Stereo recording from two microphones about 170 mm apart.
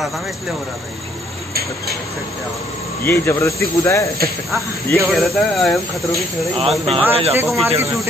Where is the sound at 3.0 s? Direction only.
15° left (ahead or behind).